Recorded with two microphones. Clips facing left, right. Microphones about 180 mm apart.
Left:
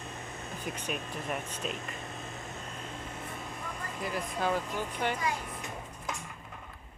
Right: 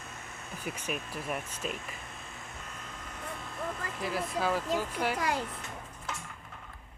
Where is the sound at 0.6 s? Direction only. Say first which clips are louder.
Right 1 dB; 10° right (ahead or behind).